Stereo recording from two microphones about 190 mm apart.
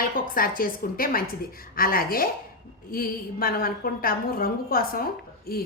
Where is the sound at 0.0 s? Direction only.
50° left (ahead or behind).